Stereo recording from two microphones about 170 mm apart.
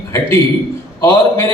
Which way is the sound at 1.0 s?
15° left (ahead or behind).